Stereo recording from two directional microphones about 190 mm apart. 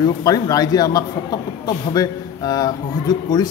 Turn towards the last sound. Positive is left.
turn(degrees=20)  # may be behind; listen again after turning